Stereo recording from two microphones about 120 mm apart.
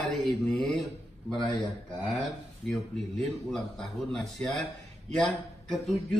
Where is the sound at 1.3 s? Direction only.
45° left (ahead or behind).